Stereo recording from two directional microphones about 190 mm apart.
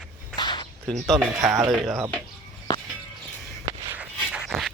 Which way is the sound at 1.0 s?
Centre (ahead or behind).